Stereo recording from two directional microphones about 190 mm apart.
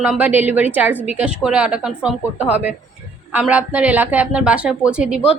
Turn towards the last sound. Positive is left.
turn(degrees=-5)  # may be behind; listen again after turning